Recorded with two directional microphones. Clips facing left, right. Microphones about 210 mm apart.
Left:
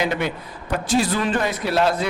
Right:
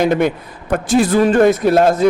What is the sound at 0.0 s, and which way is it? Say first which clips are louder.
A man's voice: right 8 dB; 50° right (ahead or behind).